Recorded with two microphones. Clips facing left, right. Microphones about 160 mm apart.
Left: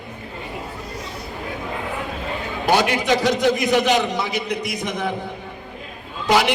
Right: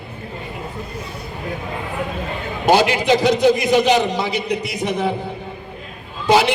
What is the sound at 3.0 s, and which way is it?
A man's voice, 10° right (ahead or behind).